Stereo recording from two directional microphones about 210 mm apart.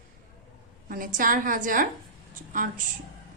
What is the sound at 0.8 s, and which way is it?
A woman's voice, 40° right (ahead or behind).